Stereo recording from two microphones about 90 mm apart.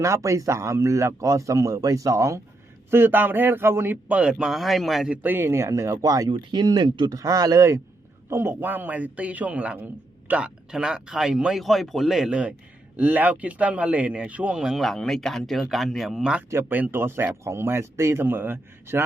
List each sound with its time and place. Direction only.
0.0 s a man's voice: 35° right (ahead or behind)
2.9 s speech: 25° right (ahead or behind)
4.2 s speech: 10° right (ahead or behind)
5.1 s speech: 20° right (ahead or behind)
6.0 s speech: 45° right (ahead or behind)
6.3 s a man's voice: 55° right (ahead or behind); by 14.5 s 15° right (ahead or behind)
14.5 s speech: 5° right (ahead or behind)
16.5 s speech: 25° right (ahead or behind)